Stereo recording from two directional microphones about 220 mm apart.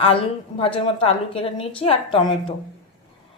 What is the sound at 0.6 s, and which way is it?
A woman's voice, 25° left (ahead or behind).